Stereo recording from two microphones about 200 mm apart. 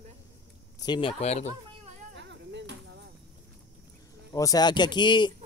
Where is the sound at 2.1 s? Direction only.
60° right (ahead or behind).